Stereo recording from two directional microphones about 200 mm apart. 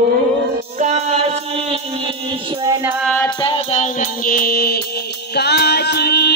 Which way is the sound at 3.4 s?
30° left (ahead or behind).